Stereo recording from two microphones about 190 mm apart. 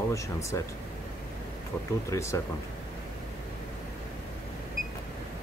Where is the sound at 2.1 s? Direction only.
15° left (ahead or behind).